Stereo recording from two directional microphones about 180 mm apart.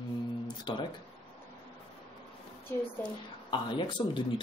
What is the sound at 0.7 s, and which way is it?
Speech, 25° left (ahead or behind).